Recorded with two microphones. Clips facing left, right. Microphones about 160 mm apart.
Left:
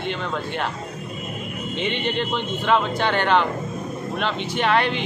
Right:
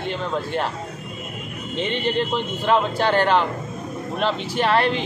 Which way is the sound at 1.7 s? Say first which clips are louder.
Right 2 dB; 40° right (ahead or behind).